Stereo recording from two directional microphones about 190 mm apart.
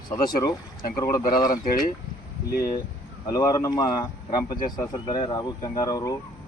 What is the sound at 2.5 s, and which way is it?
Speech, 50° left (ahead or behind).